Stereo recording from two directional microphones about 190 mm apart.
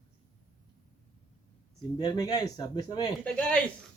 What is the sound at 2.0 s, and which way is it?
Speech, 20° left (ahead or behind).